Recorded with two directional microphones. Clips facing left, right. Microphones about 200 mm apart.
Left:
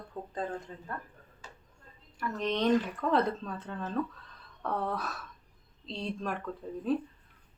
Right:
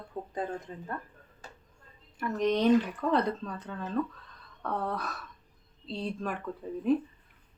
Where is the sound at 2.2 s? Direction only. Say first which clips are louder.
Right 4 dB; 15° right (ahead or behind).